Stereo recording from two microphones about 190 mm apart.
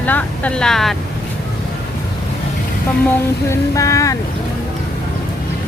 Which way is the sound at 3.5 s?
15° left (ahead or behind).